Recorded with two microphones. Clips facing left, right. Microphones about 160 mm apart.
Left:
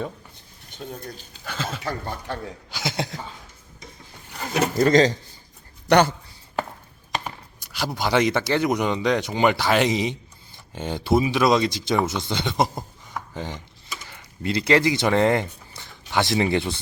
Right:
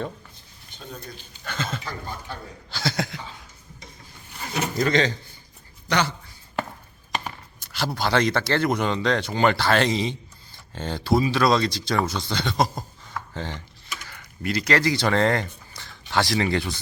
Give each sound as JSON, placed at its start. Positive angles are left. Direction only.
{"t": 1.5, "sound": "speech", "side_deg": 5}
{"t": 1.8, "sound": "speech", "side_deg": 70}
{"t": 2.6, "sound": "speech", "side_deg": 15}
{"t": 4.4, "sound": "speech", "side_deg": 55}
{"t": 4.8, "sound": "speech", "side_deg": 40}
{"t": 5.9, "sound": "a man's voice", "side_deg": 55}
{"t": 7.3, "sound": "chopping", "side_deg": 10}
{"t": 7.9, "sound": "speech", "side_deg": 15}